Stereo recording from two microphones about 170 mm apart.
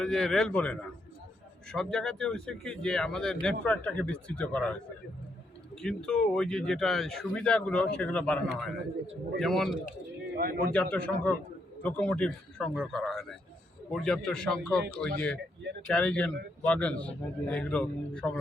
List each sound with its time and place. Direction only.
0.0 s a man's voice: 5° left (ahead or behind)
10.3 s a man's voice: 60° right (ahead or behind)
10.8 s a man's voice: 10° left (ahead or behind)